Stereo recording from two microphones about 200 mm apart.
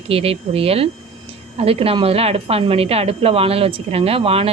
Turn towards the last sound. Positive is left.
turn(degrees=-30)  # may be behind; listen again after turning